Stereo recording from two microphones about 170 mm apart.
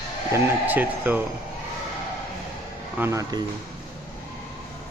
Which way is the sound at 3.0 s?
15° right (ahead or behind).